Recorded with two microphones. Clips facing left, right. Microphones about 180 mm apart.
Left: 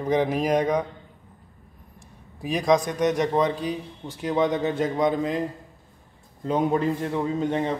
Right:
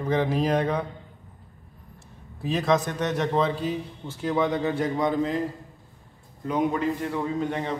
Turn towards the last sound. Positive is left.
turn(degrees=20)  # may be behind; listen again after turning